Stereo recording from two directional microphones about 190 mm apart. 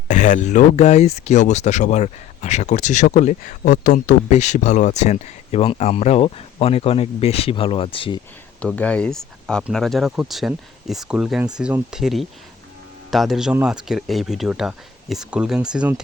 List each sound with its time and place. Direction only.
0.1 s speech: 40° left (ahead or behind)
8.6 s speech: 5° left (ahead or behind)